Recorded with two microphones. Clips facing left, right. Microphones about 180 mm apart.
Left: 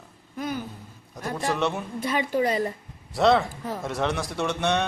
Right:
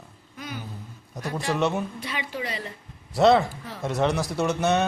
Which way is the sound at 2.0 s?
45° left (ahead or behind).